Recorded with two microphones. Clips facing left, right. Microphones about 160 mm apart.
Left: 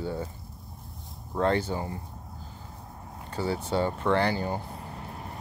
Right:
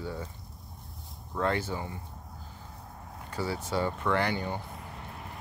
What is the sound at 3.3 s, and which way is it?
Vehicle, 30° left (ahead or behind).